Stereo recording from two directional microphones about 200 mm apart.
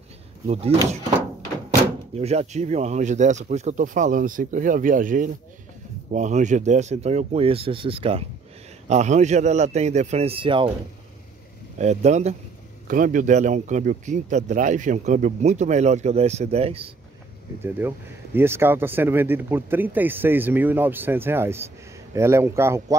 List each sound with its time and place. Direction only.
0.5 s a man's voice: 30° right (ahead or behind)
2.1 s a man's voice: 30° right (ahead or behind)
11.8 s a man's voice: 35° right (ahead or behind)
17.6 s speech: 10° right (ahead or behind)